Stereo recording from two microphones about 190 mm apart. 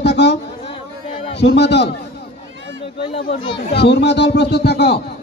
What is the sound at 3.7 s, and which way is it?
Speech, 65° left (ahead or behind).